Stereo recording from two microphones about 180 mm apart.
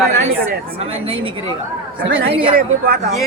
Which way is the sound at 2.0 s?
90° right.